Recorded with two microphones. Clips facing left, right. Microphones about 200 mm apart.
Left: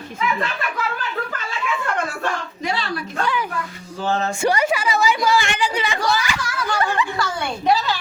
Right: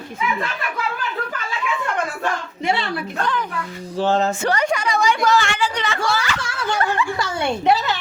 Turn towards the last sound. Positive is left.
turn(degrees=-20)  # may be behind; listen again after turning